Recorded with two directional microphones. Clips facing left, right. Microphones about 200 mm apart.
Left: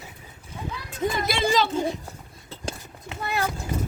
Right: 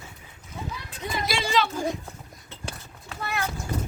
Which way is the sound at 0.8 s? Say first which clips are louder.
Left 5 dB; 45° left (ahead or behind).